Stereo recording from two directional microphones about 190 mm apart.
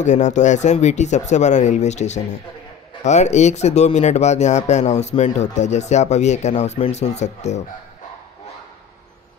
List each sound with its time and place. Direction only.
0.0 s speech: 40° left (ahead or behind)